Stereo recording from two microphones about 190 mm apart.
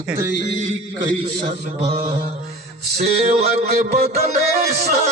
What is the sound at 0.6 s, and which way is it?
Music, 40° right (ahead or behind).